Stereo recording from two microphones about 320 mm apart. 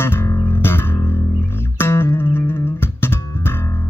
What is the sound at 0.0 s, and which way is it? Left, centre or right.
Music, centre.